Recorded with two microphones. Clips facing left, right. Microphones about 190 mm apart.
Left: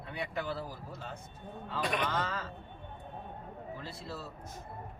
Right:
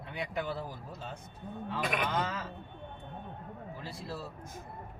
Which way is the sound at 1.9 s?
10° right (ahead or behind).